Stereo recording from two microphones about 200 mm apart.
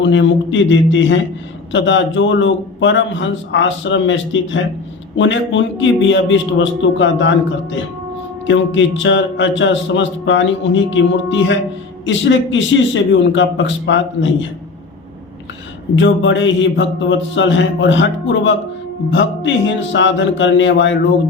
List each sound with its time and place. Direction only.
0.0 s speech: 65° left (ahead or behind)
16.0 s speech: 70° left (ahead or behind)